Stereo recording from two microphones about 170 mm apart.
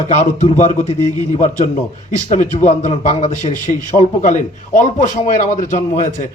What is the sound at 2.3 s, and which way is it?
A man's voice, 40° left (ahead or behind).